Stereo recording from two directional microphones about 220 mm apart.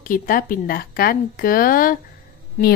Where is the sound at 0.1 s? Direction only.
40° left (ahead or behind).